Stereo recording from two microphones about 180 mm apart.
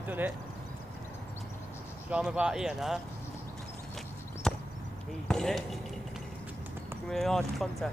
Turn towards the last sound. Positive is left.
turn(degrees=0)  # may be behind; listen again after turning